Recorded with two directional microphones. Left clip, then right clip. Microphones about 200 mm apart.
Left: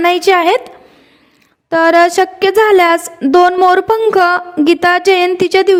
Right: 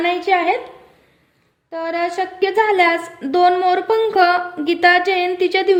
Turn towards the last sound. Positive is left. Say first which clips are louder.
# left 6 dB
turn(degrees=50)  # may be behind; listen again after turning